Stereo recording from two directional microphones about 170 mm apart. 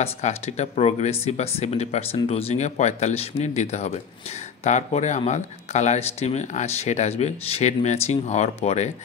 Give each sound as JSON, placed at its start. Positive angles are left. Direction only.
{"t": 0.0, "sound": "speech", "side_deg": 35}